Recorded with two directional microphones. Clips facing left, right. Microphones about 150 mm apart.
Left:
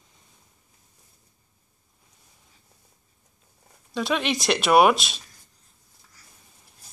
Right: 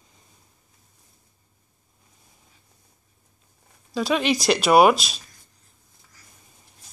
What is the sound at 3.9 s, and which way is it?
Speech, centre (ahead or behind).